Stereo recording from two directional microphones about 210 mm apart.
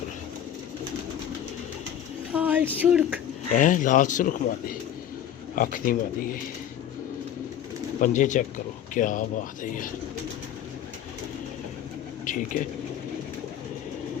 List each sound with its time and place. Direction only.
2.3 s speech: 5° right (ahead or behind)
3.5 s speech: 40° left (ahead or behind)
8.0 s speech: 35° left (ahead or behind)
12.2 s a sound: 40° left (ahead or behind)